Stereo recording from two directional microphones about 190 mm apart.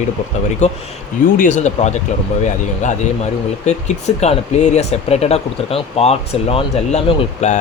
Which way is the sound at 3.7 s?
35° left (ahead or behind).